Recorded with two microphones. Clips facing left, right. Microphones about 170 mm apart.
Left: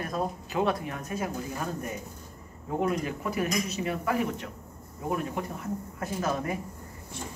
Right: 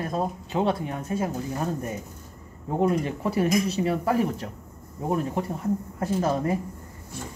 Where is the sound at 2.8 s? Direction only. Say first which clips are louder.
Right 5 dB; 30° right (ahead or behind).